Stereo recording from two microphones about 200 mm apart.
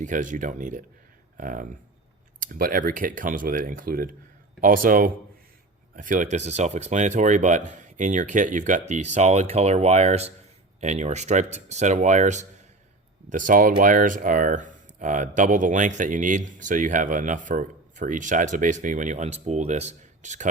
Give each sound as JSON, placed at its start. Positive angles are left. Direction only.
{"t": 0.0, "sound": "speech", "side_deg": -40}